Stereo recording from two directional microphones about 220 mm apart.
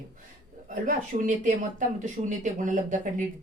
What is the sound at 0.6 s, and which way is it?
A woman's voice, 35° right (ahead or behind).